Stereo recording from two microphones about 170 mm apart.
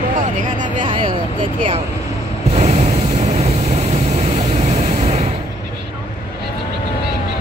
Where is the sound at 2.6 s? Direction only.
40° right (ahead or behind).